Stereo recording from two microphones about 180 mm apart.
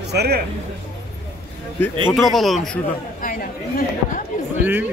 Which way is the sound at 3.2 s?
50° left (ahead or behind).